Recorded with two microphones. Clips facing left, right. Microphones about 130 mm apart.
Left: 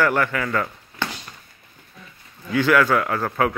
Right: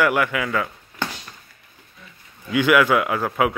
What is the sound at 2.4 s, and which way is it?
A man's voice, 15° right (ahead or behind).